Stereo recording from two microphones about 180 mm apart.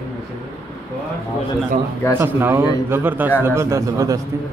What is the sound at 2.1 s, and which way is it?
A man's voice, 10° right (ahead or behind).